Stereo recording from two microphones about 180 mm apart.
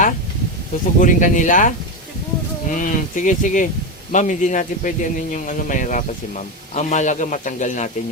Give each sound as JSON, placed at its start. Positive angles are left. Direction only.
{"t": 0.9, "sound": "speech", "side_deg": 45}